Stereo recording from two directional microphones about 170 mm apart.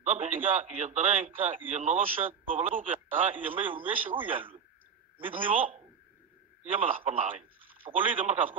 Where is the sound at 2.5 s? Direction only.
45° right (ahead or behind).